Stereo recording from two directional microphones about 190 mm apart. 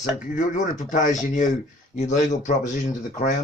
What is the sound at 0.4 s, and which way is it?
Speech, 40° left (ahead or behind).